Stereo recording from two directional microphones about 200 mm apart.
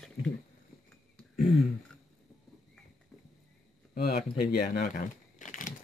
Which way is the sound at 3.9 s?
50° left (ahead or behind).